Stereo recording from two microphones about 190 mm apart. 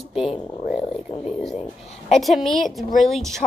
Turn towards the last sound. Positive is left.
turn(degrees=0)  # may be behind; listen again after turning